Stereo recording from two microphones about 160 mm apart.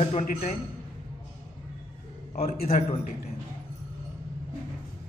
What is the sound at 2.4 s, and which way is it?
Speech, 65° left (ahead or behind).